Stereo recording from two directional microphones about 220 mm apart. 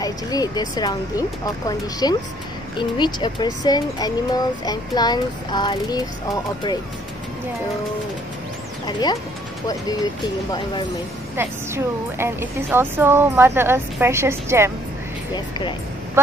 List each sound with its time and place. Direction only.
0.0 s a child's voice: 15° left (ahead or behind)
8.8 s a child's voice: 20° left (ahead or behind)
11.3 s a woman's voice: 10° right (ahead or behind)